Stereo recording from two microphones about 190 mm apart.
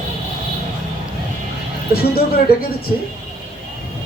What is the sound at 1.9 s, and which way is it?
Speech, 50° left (ahead or behind).